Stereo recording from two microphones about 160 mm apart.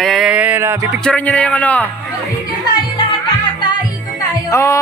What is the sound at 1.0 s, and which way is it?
Speech, 10° left (ahead or behind).